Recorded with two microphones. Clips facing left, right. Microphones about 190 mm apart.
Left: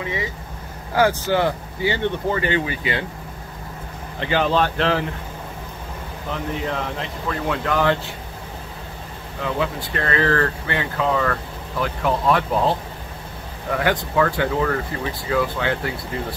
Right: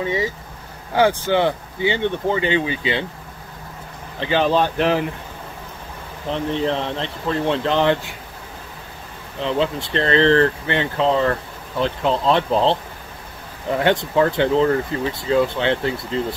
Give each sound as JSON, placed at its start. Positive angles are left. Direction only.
{"t": 0.0, "sound": "speech", "side_deg": -30}
{"t": 4.2, "sound": "speech", "side_deg": -20}
{"t": 6.3, "sound": "speech", "side_deg": -30}
{"t": 9.4, "sound": "speech", "side_deg": -25}